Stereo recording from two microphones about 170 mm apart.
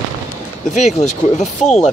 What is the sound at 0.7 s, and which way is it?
Speech, 40° left (ahead or behind).